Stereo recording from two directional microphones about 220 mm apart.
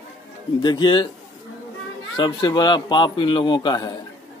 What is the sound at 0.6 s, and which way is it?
Speech, 20° left (ahead or behind).